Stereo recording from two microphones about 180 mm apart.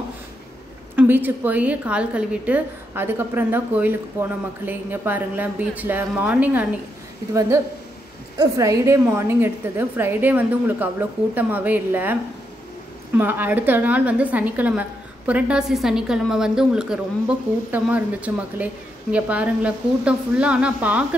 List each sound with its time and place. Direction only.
0.9 s a woman's voice: 10° right (ahead or behind)